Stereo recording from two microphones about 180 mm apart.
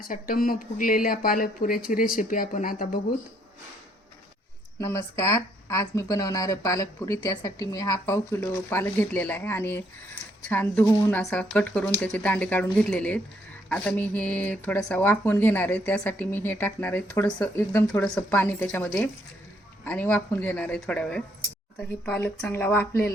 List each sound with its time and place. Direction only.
0.0 s speech: 50° left (ahead or behind)
4.8 s speech: 15° left (ahead or behind)